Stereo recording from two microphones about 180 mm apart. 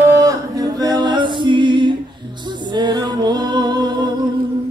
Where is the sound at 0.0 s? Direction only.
20° right (ahead or behind).